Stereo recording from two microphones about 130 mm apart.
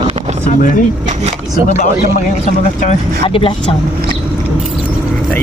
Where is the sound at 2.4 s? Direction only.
50° left (ahead or behind).